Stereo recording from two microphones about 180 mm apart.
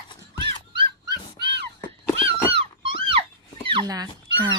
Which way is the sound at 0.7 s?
25° right (ahead or behind).